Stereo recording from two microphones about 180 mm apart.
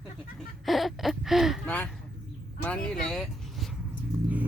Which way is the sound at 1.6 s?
10° left (ahead or behind).